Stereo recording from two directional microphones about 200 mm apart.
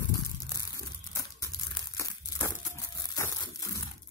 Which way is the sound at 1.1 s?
15° left (ahead or behind).